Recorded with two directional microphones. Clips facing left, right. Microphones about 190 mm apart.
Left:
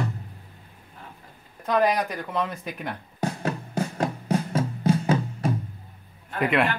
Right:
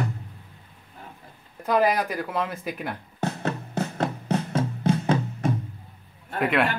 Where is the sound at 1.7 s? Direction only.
5° right (ahead or behind).